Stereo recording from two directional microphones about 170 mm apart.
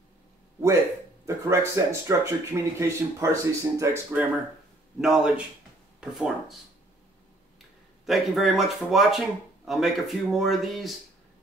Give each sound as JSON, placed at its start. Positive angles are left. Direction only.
{"t": 1.2, "sound": "speech", "side_deg": -15}
{"t": 8.0, "sound": "speech", "side_deg": 0}